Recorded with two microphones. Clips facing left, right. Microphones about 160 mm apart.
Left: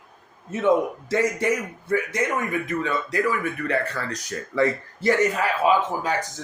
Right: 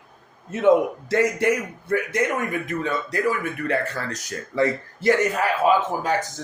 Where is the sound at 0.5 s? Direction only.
65° right (ahead or behind).